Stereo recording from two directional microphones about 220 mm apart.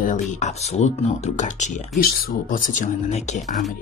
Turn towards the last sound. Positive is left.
turn(degrees=35)  # may be behind; listen again after turning